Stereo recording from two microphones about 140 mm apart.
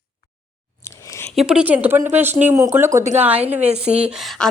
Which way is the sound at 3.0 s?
55° right (ahead or behind).